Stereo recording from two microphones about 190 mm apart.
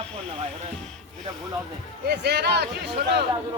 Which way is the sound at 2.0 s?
60° right (ahead or behind).